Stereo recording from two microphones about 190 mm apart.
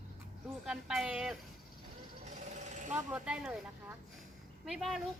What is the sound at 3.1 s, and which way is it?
Speech, 5° right (ahead or behind).